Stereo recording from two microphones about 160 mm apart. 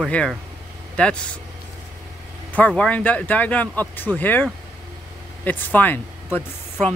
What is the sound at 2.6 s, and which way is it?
Speech, 5° left (ahead or behind).